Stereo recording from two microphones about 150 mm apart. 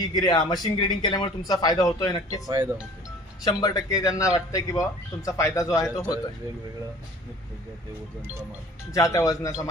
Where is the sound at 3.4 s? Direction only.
25° left (ahead or behind).